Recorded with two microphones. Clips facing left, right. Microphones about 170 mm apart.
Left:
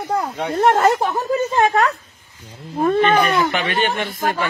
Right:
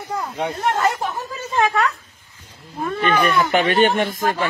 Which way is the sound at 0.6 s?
55° left (ahead or behind).